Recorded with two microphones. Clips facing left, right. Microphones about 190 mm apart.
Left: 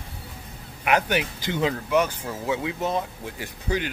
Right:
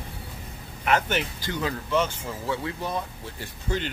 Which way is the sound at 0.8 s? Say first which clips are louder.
Left 2 dB; 10° left (ahead or behind).